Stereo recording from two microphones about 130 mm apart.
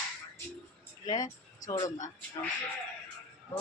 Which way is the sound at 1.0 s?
30° left (ahead or behind).